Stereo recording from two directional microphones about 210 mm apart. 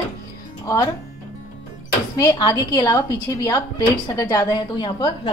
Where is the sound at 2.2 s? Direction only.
20° left (ahead or behind).